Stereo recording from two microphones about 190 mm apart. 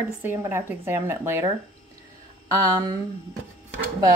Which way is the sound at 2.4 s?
15° right (ahead or behind).